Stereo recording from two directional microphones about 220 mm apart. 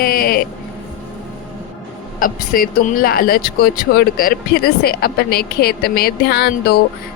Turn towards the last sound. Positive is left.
turn(degrees=45)  # may be behind; listen again after turning